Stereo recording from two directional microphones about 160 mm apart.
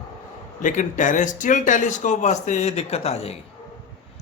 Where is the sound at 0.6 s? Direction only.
55° left (ahead or behind).